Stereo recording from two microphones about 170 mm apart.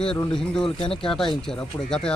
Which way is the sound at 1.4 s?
5° left (ahead or behind).